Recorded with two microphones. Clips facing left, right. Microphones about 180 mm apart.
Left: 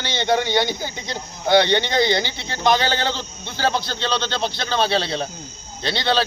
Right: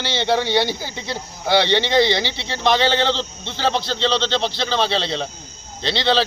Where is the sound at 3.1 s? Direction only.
25° right (ahead or behind).